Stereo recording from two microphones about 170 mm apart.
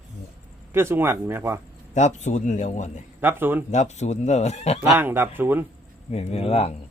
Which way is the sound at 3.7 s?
45° left (ahead or behind).